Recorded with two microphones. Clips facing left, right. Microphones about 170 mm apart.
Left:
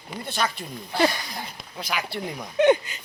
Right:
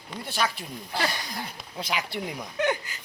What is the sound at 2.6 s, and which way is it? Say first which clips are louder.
Speech: left 9 dB; 20° left (ahead or behind).